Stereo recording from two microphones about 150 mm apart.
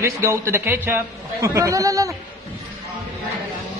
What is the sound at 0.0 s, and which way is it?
A man's voice, 15° right (ahead or behind).